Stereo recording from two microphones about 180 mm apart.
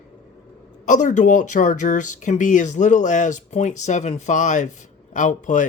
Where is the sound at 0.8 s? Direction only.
45° left (ahead or behind).